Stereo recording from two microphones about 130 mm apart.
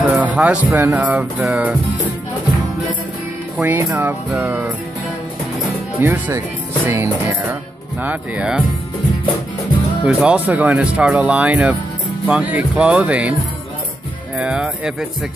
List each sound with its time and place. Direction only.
0.0 s music: 10° right (ahead or behind)
0.7 s speech: 20° right (ahead or behind)
3.5 s speech: 15° right (ahead or behind)
5.9 s speech: 15° right (ahead or behind)
10.0 s speech: 10° right (ahead or behind)
14.4 s speech: 5° right (ahead or behind)